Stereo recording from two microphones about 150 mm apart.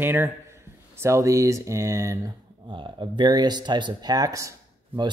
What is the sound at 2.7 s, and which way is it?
Speech, 35° right (ahead or behind).